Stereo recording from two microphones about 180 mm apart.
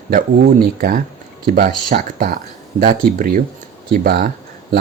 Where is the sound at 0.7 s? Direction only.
55° right (ahead or behind).